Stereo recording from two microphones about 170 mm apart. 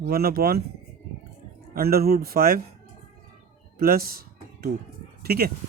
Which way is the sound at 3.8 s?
60° right (ahead or behind).